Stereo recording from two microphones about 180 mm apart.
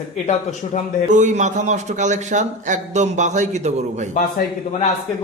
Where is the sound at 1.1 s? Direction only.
45° right (ahead or behind).